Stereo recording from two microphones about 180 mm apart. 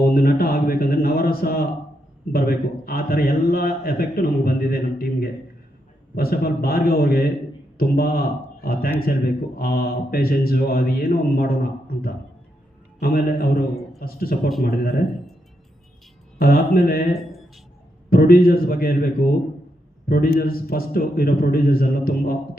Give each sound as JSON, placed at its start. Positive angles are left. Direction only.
{"t": 0.0, "sound": "a man's voice", "side_deg": 55}
{"t": 13.0, "sound": "a man's voice", "side_deg": 55}
{"t": 16.4, "sound": "a man's voice", "side_deg": 55}
{"t": 18.1, "sound": "a man's voice", "side_deg": 55}